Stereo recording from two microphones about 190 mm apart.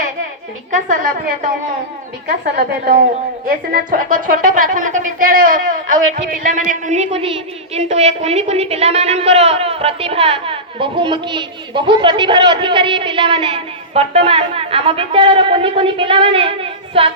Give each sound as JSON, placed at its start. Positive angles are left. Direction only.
{"t": 0.7, "sound": "a woman's voice", "side_deg": -45}
{"t": 2.4, "sound": "a woman's voice", "side_deg": -55}